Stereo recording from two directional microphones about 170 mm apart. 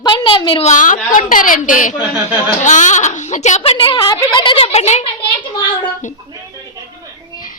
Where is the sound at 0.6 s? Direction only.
50° left (ahead or behind).